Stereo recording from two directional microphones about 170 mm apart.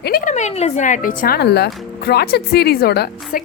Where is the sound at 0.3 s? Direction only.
45° left (ahead or behind).